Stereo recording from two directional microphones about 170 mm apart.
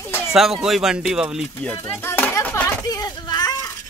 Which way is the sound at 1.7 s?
10° left (ahead or behind).